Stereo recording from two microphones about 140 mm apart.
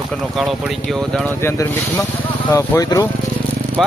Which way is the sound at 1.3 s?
20° left (ahead or behind).